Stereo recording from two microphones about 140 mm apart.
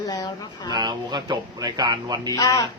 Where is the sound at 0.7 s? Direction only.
30° right (ahead or behind).